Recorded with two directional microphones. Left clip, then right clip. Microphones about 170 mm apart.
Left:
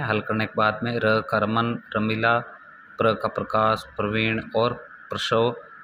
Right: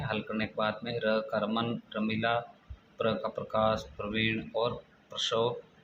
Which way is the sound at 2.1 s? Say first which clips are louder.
Left 8 dB; 30° left (ahead or behind).